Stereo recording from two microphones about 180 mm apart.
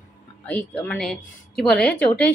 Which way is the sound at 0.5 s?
5° left (ahead or behind).